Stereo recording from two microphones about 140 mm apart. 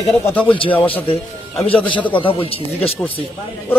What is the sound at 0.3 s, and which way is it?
Speech, 10° left (ahead or behind).